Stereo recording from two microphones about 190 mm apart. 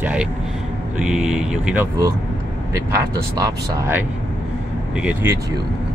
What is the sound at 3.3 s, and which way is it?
Speech, 20° right (ahead or behind).